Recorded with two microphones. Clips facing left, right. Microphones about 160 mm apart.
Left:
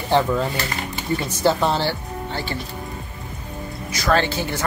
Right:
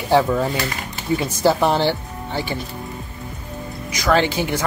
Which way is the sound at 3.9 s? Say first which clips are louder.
Right 2 dB; 15° right (ahead or behind).